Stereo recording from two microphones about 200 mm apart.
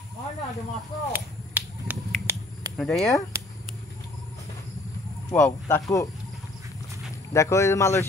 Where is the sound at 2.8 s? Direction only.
Centre (ahead or behind).